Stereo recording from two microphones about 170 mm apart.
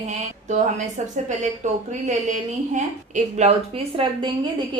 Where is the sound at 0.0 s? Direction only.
45° right (ahead or behind).